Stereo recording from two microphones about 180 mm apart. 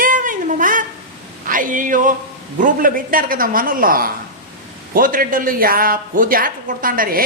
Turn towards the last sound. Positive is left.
turn(degrees=-50)  # may be behind; listen again after turning